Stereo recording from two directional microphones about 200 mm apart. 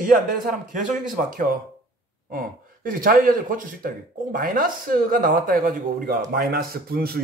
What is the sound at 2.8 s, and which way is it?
Speech, 45° right (ahead or behind).